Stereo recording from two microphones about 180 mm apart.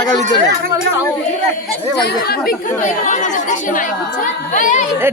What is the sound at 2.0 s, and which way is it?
Speech, 60° left (ahead or behind).